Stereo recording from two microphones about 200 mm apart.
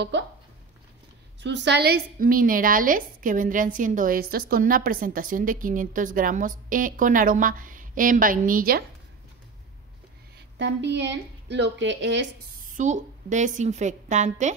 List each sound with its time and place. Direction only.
1.4 s a woman's voice: 60° right (ahead or behind); by 8.8 s 45° right (ahead or behind)
10.6 s a woman's voice: 60° right (ahead or behind)
12.7 s a woman's voice: 40° right (ahead or behind)